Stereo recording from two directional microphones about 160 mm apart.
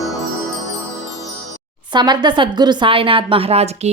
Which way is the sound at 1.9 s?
25° right (ahead or behind).